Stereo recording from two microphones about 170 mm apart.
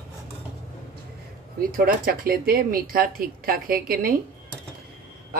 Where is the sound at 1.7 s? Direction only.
60° right (ahead or behind).